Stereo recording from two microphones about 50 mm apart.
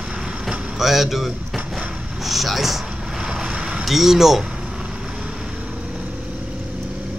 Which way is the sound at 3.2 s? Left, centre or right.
Centre.